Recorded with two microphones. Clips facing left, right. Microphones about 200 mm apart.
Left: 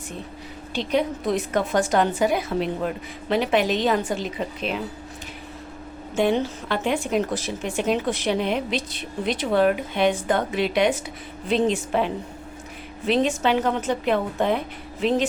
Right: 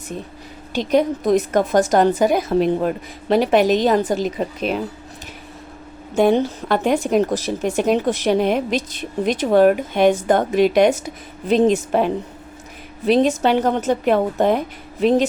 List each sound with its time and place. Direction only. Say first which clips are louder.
0.7 s a woman's voice: right 6 dB; 45° right (ahead or behind)
6.1 s a woman's voice: right 6 dB; 40° right (ahead or behind)